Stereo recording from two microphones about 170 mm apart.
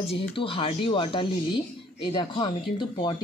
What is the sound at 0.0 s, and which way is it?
Speech, 35° left (ahead or behind).